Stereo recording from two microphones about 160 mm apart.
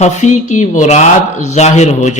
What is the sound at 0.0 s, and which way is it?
A man's voice, 45° left (ahead or behind).